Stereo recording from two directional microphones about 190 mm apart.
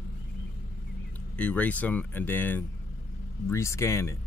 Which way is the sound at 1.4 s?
5° left (ahead or behind).